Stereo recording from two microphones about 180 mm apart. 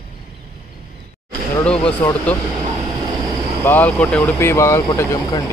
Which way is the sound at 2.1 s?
10° left (ahead or behind).